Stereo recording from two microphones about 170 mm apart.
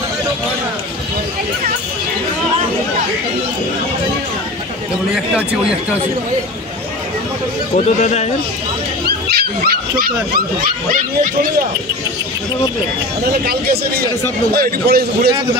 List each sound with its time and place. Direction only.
7.7 s speech: 40° left (ahead or behind)
9.0 s speech: 65° right (ahead or behind)
13.2 s a man's voice: 60° right (ahead or behind)